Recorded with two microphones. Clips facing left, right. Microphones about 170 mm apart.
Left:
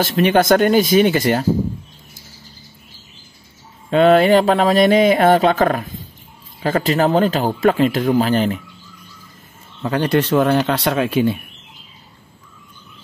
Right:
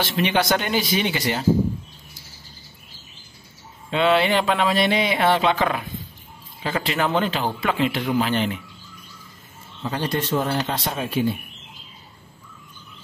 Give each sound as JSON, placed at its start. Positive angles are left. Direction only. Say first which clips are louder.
{"t": 0.0, "sound": "a man's voice", "louder": "left 7 dB", "side_deg": 45}
{"t": 3.9, "sound": "a man's voice", "louder": "left 8 dB", "side_deg": 45}
{"t": 9.8, "sound": "speech", "louder": "left 8 dB", "side_deg": 65}